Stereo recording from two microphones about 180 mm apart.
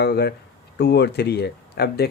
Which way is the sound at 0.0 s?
65° left (ahead or behind).